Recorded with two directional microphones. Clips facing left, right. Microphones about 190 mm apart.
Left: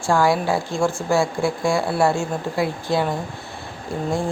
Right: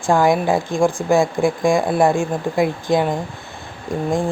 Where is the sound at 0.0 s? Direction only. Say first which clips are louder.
Right 3 dB; 20° right (ahead or behind).